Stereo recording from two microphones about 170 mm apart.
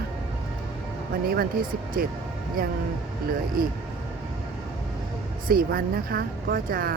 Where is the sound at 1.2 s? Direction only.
60° right (ahead or behind).